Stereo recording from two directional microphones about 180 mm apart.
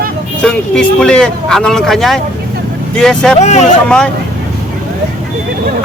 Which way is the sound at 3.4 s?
40° left (ahead or behind).